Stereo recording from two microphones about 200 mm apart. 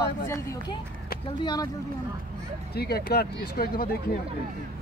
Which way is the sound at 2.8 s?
50° left (ahead or behind).